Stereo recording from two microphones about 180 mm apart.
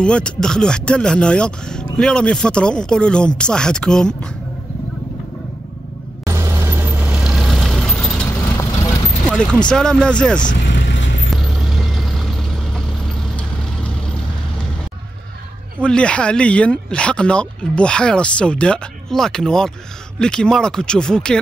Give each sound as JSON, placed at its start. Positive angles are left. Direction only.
{"t": 0.0, "sound": "speech", "side_deg": 5}
{"t": 6.2, "sound": "vehicle", "side_deg": -15}
{"t": 8.3, "sound": "vehicle", "side_deg": 15}
{"t": 9.3, "sound": "speech", "side_deg": 5}
{"t": 10.6, "sound": "vehicle", "side_deg": 85}
{"t": 11.5, "sound": "vehicle", "side_deg": 0}
{"t": 15.8, "sound": "speech", "side_deg": 5}